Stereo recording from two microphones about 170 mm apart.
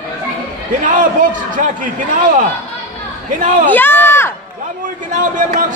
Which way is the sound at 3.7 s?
10° left (ahead or behind).